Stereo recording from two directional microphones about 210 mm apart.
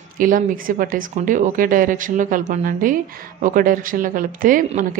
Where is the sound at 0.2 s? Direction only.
40° right (ahead or behind).